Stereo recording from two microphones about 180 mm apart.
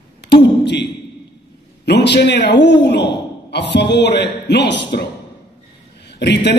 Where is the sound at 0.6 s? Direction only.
70° left (ahead or behind).